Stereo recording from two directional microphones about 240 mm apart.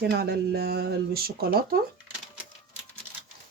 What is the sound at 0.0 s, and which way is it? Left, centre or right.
Speech, right.